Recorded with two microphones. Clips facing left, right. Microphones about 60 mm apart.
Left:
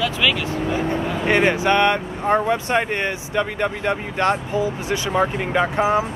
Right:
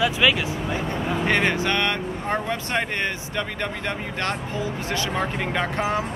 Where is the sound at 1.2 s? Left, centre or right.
Centre.